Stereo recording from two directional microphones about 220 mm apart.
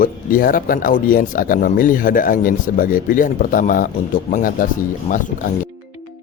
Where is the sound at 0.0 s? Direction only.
40° left (ahead or behind).